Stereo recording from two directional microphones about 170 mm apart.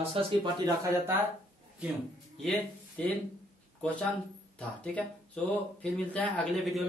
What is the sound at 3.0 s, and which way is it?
Speech, 5° left (ahead or behind).